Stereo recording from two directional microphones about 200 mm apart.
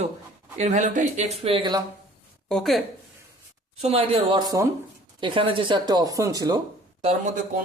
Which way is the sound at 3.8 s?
30° right (ahead or behind).